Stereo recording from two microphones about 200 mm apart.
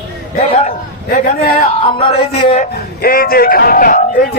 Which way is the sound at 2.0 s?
30° left (ahead or behind).